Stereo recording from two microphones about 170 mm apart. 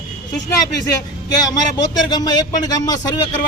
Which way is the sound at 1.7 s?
25° left (ahead or behind).